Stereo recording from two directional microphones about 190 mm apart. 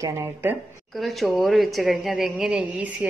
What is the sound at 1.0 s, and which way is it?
Speech, centre (ahead or behind).